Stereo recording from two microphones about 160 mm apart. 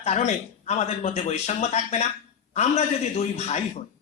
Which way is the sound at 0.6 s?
45° left (ahead or behind).